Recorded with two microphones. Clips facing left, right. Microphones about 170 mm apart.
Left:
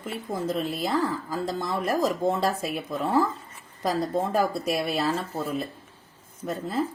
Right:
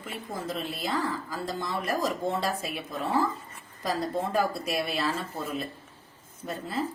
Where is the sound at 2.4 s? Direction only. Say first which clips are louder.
Left 4 dB; 50° left (ahead or behind).